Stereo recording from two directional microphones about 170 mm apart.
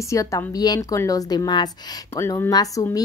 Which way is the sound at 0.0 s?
20° left (ahead or behind).